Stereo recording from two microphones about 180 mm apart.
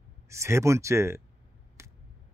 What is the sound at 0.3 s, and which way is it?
Speech, 15° right (ahead or behind).